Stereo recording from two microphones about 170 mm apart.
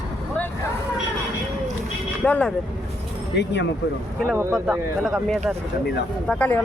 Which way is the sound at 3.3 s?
90° left.